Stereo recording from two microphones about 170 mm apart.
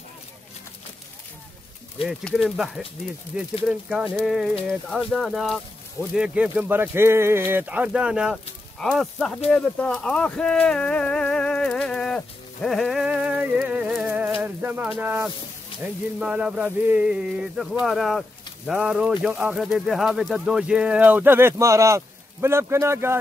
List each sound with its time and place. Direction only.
2.0 s speech: centre (ahead or behind)
9.5 s a sound: 5° left (ahead or behind)
14.4 s speech: 10° right (ahead or behind)
15.7 s music: 30° left (ahead or behind)
16.2 s speech: 5° right (ahead or behind)